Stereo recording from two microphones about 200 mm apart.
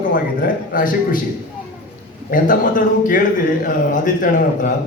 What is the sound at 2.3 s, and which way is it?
A man's voice, 40° left (ahead or behind).